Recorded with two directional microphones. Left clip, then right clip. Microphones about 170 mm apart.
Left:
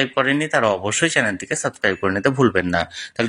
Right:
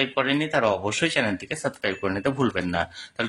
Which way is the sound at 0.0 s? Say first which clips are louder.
Left 5 dB; 25° left (ahead or behind).